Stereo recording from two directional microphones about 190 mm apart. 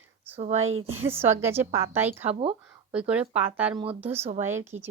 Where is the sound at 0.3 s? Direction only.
35° right (ahead or behind).